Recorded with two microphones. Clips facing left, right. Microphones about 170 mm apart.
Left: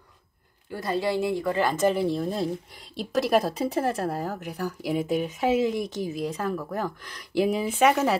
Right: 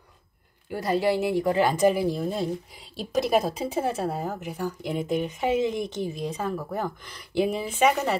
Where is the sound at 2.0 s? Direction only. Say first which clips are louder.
Even; centre (ahead or behind).